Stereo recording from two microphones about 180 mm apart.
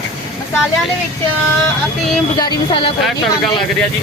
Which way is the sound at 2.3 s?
20° left (ahead or behind).